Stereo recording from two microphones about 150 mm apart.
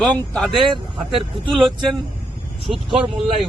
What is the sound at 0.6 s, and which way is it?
Speech, 35° right (ahead or behind).